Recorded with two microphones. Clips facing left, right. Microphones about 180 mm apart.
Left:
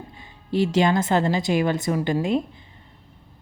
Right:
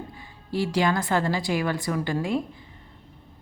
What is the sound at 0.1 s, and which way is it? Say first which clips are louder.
A woman's voice: left 5 dB; 20° left (ahead or behind).